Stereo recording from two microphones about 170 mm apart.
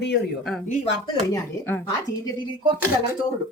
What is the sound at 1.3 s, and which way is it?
Speech, 20° left (ahead or behind).